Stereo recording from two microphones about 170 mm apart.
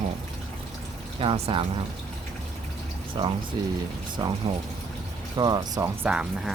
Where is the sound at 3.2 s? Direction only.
30° right (ahead or behind).